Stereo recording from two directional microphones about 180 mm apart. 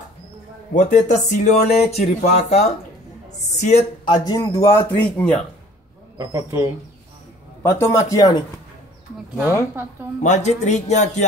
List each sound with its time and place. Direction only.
0.7 s speech: 45° left (ahead or behind)
4.0 s a man's voice: 25° left (ahead or behind)
6.1 s speech: 20° right (ahead or behind)
7.6 s a man's voice: 15° left (ahead or behind)
10.2 s speech: 40° left (ahead or behind)